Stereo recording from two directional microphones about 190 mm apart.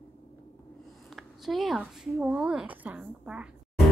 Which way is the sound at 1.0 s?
Centre (ahead or behind).